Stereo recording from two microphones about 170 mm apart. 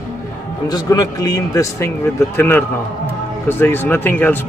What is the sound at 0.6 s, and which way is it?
A man's voice, 20° left (ahead or behind).